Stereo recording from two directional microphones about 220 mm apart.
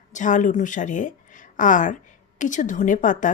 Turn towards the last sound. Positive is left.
turn(degrees=35)  # may be behind; listen again after turning